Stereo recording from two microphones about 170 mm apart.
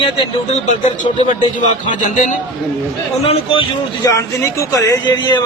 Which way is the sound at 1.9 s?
45° left (ahead or behind).